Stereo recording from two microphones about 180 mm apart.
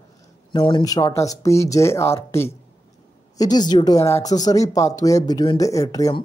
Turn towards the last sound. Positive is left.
turn(degrees=20)  # may be behind; listen again after turning